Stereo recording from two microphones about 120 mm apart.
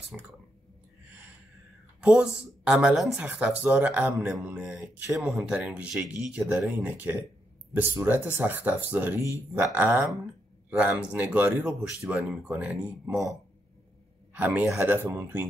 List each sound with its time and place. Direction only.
2.0 s speech: 10° right (ahead or behind)